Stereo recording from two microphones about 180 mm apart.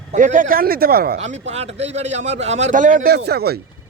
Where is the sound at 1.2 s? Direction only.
35° right (ahead or behind).